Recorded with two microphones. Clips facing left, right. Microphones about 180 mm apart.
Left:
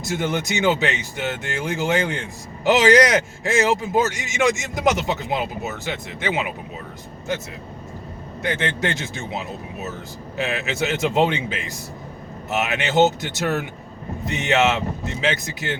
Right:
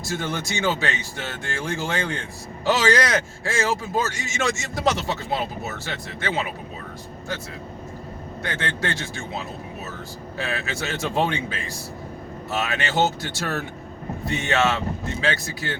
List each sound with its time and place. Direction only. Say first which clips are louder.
0.0 s speech: left 4 dB; 20° left (ahead or behind)
8.4 s speech: left 5 dB; 20° left (ahead or behind)